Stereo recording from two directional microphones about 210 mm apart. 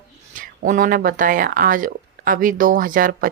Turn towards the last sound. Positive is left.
turn(degrees=-40)  # may be behind; listen again after turning